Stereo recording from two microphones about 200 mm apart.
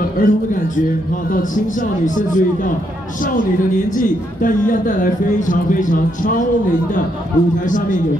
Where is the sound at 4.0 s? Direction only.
40° left (ahead or behind).